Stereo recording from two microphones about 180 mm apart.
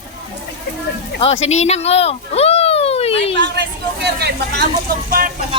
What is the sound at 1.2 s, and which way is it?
Speech, 35° left (ahead or behind).